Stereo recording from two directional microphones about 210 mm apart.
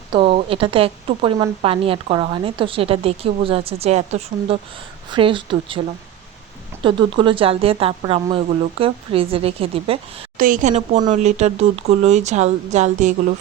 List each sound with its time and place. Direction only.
0.1 s a woman's voice: 25° right (ahead or behind)
6.8 s a woman's voice: 25° right (ahead or behind)
10.3 s speech: 40° right (ahead or behind)